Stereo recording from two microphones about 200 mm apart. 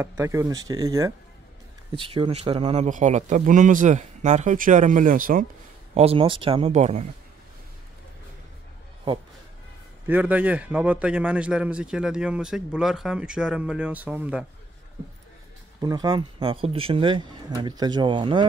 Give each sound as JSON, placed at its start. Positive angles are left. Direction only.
{"t": 0.0, "sound": "speech", "side_deg": -15}
{"t": 2.0, "sound": "speech", "side_deg": -25}
{"t": 5.9, "sound": "speech", "side_deg": -30}
{"t": 10.0, "sound": "a man's voice", "side_deg": -10}
{"t": 15.8, "sound": "speech", "side_deg": -20}